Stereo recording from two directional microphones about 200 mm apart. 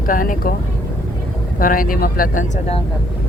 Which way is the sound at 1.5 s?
45° left (ahead or behind).